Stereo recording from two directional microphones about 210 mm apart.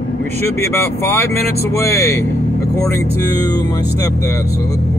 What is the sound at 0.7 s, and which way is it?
Speech, 10° left (ahead or behind).